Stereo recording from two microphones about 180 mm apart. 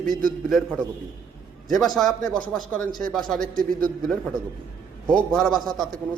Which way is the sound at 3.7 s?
50° right (ahead or behind).